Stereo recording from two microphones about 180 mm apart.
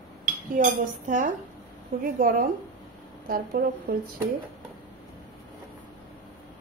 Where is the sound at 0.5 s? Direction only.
45° right (ahead or behind).